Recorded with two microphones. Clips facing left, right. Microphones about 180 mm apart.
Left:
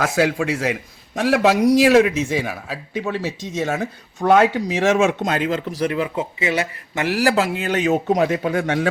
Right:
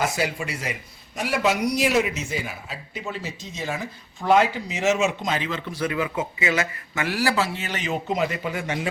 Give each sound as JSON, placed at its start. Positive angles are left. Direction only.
{"t": 0.0, "sound": "a man's voice", "side_deg": 90}
{"t": 4.2, "sound": "speech", "side_deg": 60}
{"t": 5.2, "sound": "speech", "side_deg": 50}
{"t": 7.1, "sound": "speech", "side_deg": 45}
{"t": 8.1, "sound": "speech", "side_deg": 70}